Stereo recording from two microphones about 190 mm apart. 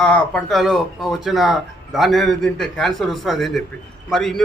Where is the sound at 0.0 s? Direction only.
5° left (ahead or behind).